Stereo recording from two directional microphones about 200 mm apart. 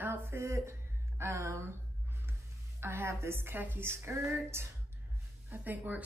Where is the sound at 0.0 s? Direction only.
10° right (ahead or behind).